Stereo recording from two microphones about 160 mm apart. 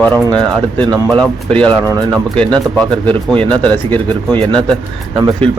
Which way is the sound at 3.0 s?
10° left (ahead or behind).